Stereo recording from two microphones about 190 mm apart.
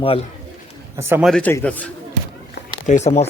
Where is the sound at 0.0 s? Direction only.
30° left (ahead or behind).